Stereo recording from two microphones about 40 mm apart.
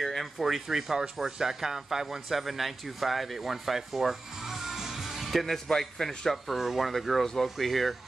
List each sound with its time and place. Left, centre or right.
0.0 s speech: centre
5.2 s a man's voice: centre
6.3 s speech: centre